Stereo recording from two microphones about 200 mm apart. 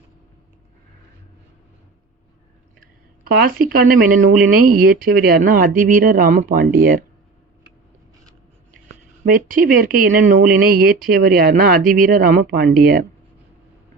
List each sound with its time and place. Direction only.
2.8 s speech: 45° right (ahead or behind)
9.2 s speech: 45° right (ahead or behind)